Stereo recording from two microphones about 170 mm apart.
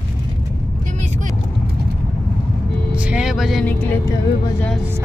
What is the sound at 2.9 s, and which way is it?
Speech, 5° right (ahead or behind).